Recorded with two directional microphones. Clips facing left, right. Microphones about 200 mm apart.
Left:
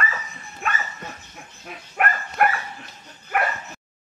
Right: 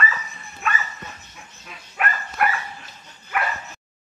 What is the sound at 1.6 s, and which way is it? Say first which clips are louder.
Dog: left 3 dB; 50° left (ahead or behind).